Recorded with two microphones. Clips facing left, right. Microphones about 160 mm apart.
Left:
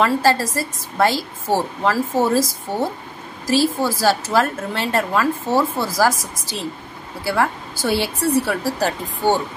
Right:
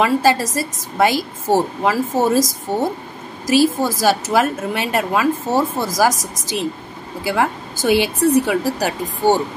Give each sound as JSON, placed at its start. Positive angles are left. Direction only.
{"t": 0.0, "sound": "a woman's voice", "side_deg": -15}
{"t": 3.4, "sound": "a woman's voice", "side_deg": -15}
{"t": 7.8, "sound": "a woman's voice", "side_deg": -20}